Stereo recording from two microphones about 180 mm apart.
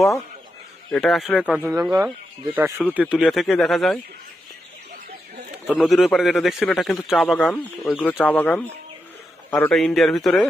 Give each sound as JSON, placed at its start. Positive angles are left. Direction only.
{"t": 0.9, "sound": "a man's voice", "side_deg": 0}
{"t": 1.8, "sound": "a man's voice", "side_deg": -20}
{"t": 5.8, "sound": "a man's voice", "side_deg": 0}